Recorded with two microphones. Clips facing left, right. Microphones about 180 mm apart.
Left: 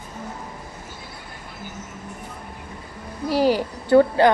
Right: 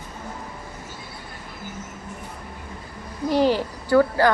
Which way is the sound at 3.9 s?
20° left (ahead or behind).